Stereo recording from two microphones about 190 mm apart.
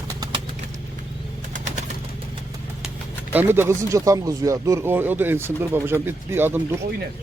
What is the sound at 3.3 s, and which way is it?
Speech, 10° right (ahead or behind).